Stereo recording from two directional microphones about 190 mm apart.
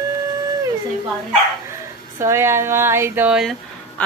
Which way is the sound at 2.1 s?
15° right (ahead or behind).